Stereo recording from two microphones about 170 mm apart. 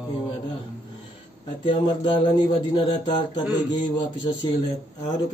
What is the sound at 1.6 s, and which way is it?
A man's voice, 30° left (ahead or behind).